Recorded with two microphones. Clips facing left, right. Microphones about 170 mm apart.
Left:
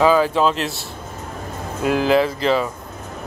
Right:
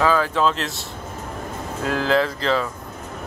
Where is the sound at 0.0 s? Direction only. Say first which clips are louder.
Left 4 dB; 15° left (ahead or behind).